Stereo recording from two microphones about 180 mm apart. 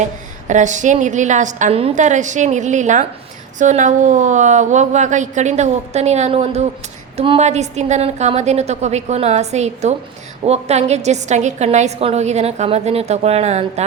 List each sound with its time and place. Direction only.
0.0 s a woman's voice: 40° right (ahead or behind)